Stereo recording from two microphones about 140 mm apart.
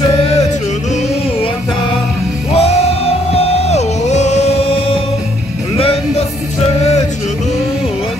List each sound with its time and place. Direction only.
2.5 s music: 50° left (ahead or behind)